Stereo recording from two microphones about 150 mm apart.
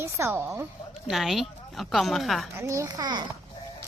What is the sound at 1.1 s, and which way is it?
A woman's voice, centre (ahead or behind).